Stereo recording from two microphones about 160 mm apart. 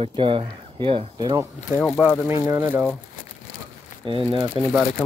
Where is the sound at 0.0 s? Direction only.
30° right (ahead or behind).